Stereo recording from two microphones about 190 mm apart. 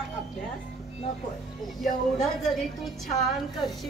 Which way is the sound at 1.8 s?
Centre (ahead or behind).